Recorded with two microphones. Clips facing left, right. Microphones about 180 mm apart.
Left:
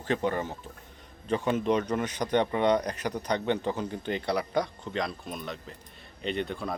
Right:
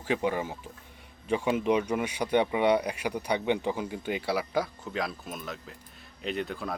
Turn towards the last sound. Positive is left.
turn(degrees=0)  # may be behind; listen again after turning